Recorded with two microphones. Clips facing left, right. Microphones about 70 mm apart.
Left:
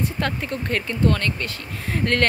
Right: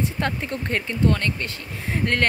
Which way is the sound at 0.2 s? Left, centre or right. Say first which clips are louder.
Even; right.